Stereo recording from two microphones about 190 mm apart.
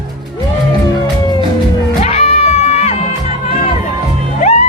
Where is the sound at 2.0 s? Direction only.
35° left (ahead or behind).